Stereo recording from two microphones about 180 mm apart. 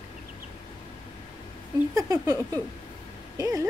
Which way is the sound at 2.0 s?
20° right (ahead or behind).